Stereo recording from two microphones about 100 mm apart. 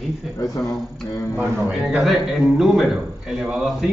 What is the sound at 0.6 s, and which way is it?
Speech, 10° left (ahead or behind).